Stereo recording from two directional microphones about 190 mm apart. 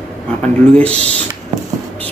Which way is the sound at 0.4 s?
5° left (ahead or behind).